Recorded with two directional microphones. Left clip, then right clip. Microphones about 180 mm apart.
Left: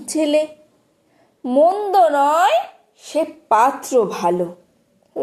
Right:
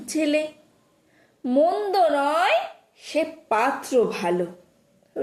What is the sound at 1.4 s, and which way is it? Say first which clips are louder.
A woman's voice: left 6 dB; 20° left (ahead or behind).